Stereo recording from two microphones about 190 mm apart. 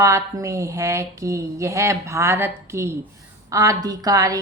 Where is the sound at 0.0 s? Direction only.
15° right (ahead or behind).